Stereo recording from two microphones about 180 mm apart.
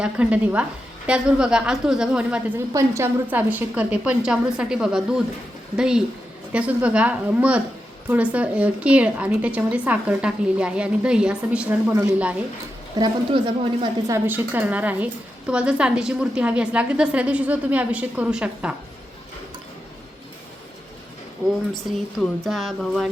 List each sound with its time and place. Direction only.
0.0 s a woman's voice: 5° right (ahead or behind)
2.7 s a woman's voice: 15° right (ahead or behind)
13.0 s a woman's voice: 25° right (ahead or behind)
14.1 s a woman's voice: 10° right (ahead or behind)
21.9 s a woman's voice: centre (ahead or behind)